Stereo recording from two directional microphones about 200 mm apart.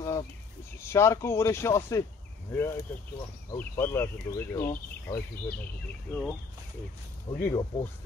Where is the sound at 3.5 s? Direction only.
10° left (ahead or behind).